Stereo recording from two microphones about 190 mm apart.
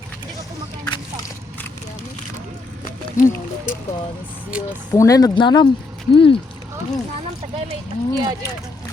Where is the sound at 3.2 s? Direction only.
45° left (ahead or behind).